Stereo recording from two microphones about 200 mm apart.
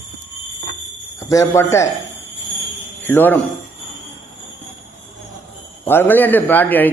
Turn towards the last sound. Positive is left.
turn(degrees=10)  # may be behind; listen again after turning